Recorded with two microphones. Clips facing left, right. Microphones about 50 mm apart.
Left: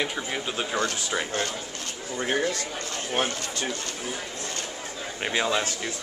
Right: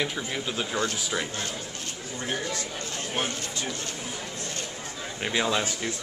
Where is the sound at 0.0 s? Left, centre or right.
Centre.